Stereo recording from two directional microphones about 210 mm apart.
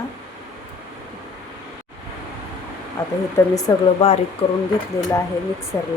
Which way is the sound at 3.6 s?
25° left (ahead or behind).